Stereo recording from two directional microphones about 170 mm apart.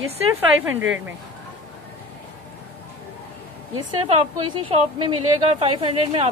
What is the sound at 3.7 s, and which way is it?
Speech, 30° right (ahead or behind).